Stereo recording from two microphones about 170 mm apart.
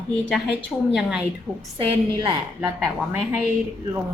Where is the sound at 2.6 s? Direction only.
10° right (ahead or behind).